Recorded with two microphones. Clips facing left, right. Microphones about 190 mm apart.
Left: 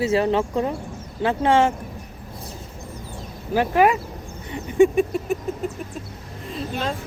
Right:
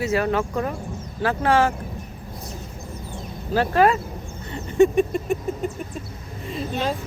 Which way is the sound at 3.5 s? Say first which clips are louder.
Even; 15° left (ahead or behind).